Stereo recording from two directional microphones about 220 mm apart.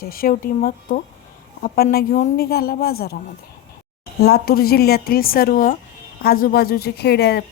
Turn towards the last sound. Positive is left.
turn(degrees=45)  # may be behind; listen again after turning